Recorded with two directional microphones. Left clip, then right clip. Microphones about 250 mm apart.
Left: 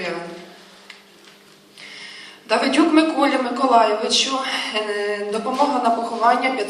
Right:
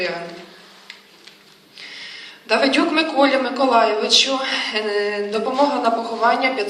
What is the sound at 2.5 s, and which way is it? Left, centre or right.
A woman's voice, right.